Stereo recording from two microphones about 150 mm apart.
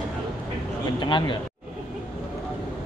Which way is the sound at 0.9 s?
30° left (ahead or behind).